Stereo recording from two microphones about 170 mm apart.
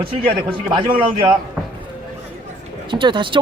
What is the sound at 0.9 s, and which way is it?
Speech, 30° right (ahead or behind).